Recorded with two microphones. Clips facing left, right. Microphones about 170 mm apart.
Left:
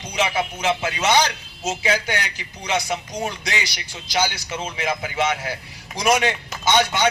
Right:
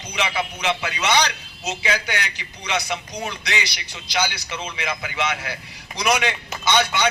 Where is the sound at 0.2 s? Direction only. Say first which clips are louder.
Left 3 dB; 45° left (ahead or behind).